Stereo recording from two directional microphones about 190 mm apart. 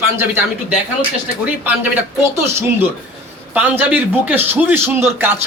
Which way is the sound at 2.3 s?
15° right (ahead or behind).